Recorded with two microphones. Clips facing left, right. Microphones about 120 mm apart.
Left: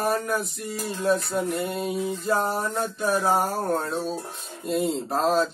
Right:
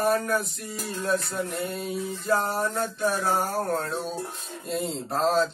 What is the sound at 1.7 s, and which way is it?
Speech, centre (ahead or behind).